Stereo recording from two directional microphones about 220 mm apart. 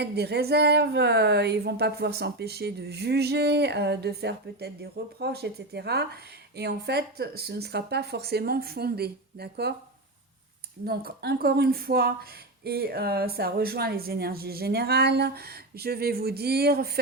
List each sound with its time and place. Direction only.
0.0 s speech: 50° right (ahead or behind)
10.8 s speech: 45° right (ahead or behind)